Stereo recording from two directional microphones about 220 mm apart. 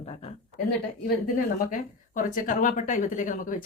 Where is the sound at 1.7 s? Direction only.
35° left (ahead or behind).